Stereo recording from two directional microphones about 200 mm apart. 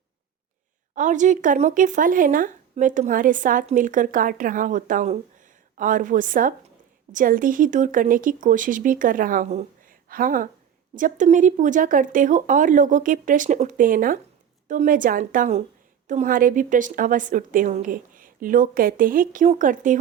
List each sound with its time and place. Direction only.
0.9 s speech: 40° right (ahead or behind)